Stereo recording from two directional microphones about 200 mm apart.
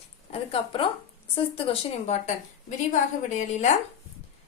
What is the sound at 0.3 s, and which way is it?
A woman's voice, 25° left (ahead or behind).